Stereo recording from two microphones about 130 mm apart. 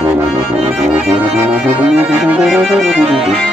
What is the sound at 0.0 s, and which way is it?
Accordion, 10° right (ahead or behind).